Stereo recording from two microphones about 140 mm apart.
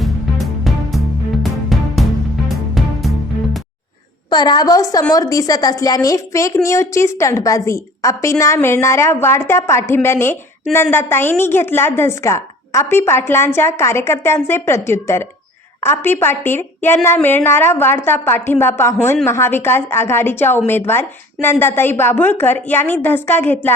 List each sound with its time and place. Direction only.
0.0 s music: centre (ahead or behind)
4.3 s a woman's voice: 30° left (ahead or behind); by 23.7 s 15° left (ahead or behind)